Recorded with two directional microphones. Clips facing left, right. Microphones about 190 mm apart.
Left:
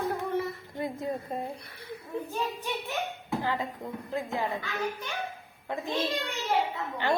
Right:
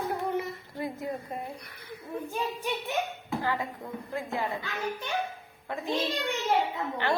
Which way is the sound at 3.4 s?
20° left (ahead or behind).